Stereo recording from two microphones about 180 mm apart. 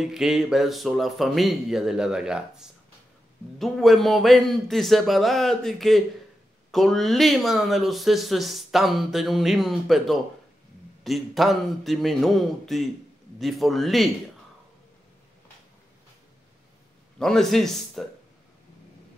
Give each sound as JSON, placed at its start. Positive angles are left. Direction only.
{"t": 0.0, "sound": "speech", "side_deg": -5}
{"t": 17.2, "sound": "speech", "side_deg": 0}